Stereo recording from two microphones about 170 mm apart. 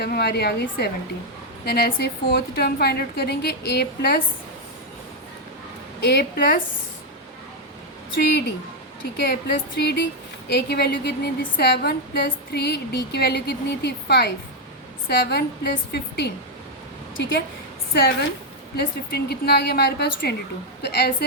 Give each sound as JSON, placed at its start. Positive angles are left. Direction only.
{"t": 0.0, "sound": "a woman's voice", "side_deg": 70}
{"t": 6.0, "sound": "a woman's voice", "side_deg": 75}
{"t": 8.2, "sound": "a woman's voice", "side_deg": 70}
{"t": 17.2, "sound": "a woman's voice", "side_deg": 90}
{"t": 18.8, "sound": "a woman's voice", "side_deg": 70}